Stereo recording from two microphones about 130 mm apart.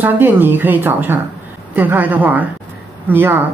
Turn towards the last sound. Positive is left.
turn(degrees=-15)  # may be behind; listen again after turning